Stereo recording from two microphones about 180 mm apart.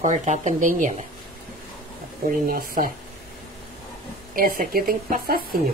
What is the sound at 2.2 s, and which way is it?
Speech, 55° right (ahead or behind).